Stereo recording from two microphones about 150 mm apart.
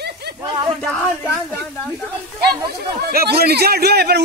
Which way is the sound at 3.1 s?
90° right.